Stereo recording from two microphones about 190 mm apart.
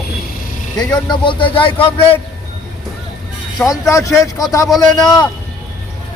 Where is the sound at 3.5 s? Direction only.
15° left (ahead or behind).